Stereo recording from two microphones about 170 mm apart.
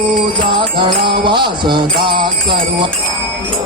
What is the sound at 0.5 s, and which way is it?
Jingle bell, 30° right (ahead or behind).